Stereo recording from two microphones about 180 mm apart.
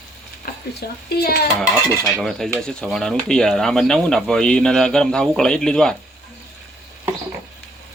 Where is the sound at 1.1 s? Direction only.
60° left (ahead or behind).